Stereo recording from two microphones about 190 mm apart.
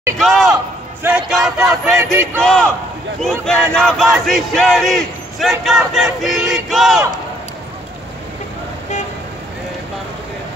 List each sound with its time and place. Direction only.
0.2 s crowd: centre (ahead or behind)